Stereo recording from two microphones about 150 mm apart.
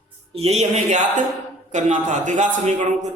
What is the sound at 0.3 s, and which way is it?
A man's voice, 45° right (ahead or behind).